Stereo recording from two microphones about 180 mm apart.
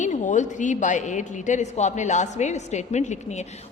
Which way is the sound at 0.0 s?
45° left (ahead or behind).